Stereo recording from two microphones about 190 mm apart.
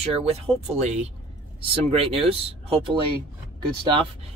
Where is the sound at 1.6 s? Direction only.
30° right (ahead or behind).